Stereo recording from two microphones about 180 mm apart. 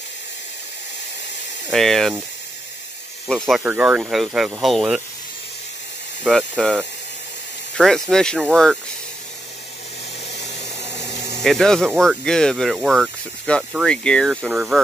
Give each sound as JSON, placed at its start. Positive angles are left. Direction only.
{"t": 1.7, "sound": "speech", "side_deg": 5}
{"t": 3.3, "sound": "speech", "side_deg": 0}
{"t": 3.6, "sound": "speech", "side_deg": -10}
{"t": 6.2, "sound": "speech", "side_deg": 5}
{"t": 7.7, "sound": "speech", "side_deg": 0}
{"t": 10.3, "sound": "a sound", "side_deg": 75}
{"t": 11.4, "sound": "speech", "side_deg": 5}